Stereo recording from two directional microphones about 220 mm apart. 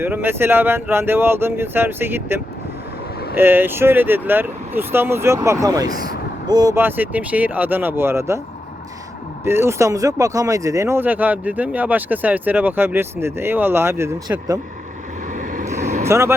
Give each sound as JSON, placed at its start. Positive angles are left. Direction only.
{"t": 0.0, "sound": "speech", "side_deg": -10}
{"t": 9.4, "sound": "speech", "side_deg": -10}
{"t": 15.3, "sound": "vehicle", "side_deg": -35}
{"t": 16.0, "sound": "speech", "side_deg": -10}